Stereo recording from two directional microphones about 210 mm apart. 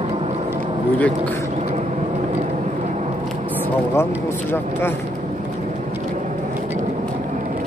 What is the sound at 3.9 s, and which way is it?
A man's voice, 10° left (ahead or behind).